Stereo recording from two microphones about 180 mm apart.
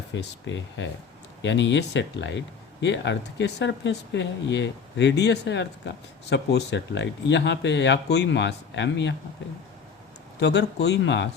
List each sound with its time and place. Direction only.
0.1 s speech: 85° left
1.4 s speech: 80° left
10.4 s speech: 70° left (ahead or behind)